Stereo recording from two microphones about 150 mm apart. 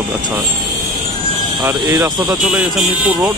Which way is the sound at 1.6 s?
20° right (ahead or behind).